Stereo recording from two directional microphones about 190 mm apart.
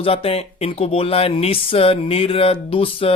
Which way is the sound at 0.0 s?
30° left (ahead or behind).